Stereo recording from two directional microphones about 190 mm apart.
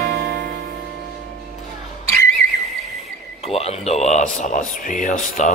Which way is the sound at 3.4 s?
35° left (ahead or behind).